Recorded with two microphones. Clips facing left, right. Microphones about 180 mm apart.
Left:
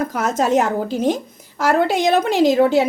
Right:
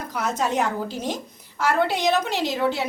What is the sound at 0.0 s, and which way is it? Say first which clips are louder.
A woman's voice: left 6 dB; 45° left (ahead or behind).